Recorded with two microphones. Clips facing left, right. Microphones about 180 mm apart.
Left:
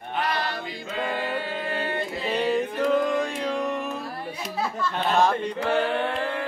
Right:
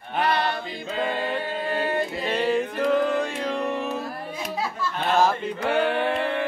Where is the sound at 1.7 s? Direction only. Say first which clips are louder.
Right 5 dB; 40° right (ahead or behind).